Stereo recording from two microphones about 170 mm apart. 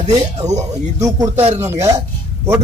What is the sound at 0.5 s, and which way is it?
Speech, 20° right (ahead or behind).